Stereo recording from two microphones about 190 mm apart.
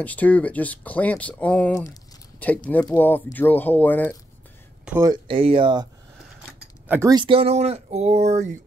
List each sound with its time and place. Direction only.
0.0 s speech: 10° left (ahead or behind)
5.0 s speech: 25° right (ahead or behind)
6.4 s speech: 10° right (ahead or behind); by 8.5 s 35° right (ahead or behind)